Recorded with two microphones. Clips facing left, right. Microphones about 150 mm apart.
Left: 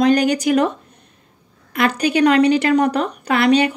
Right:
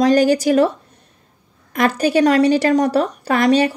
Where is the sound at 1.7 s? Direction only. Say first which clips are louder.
Right 1 dB; 40° right (ahead or behind).